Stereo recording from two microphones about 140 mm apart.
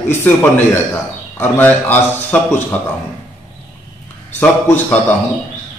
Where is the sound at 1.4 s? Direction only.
15° left (ahead or behind).